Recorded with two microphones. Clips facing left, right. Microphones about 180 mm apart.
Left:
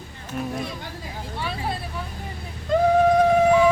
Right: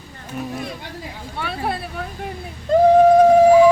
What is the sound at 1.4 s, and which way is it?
Speech, 60° right (ahead or behind).